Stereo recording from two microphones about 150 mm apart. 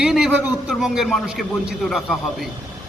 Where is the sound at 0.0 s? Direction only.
5° right (ahead or behind).